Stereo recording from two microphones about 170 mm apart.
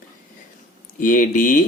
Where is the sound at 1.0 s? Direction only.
50° left (ahead or behind).